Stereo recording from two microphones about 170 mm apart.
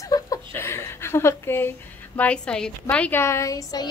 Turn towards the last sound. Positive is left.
turn(degrees=20)  # may be behind; listen again after turning